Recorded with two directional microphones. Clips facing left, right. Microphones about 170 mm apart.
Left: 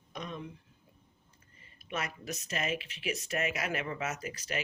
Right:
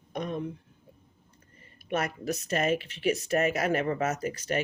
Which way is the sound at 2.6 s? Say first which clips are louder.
Right 9 dB; 40° right (ahead or behind).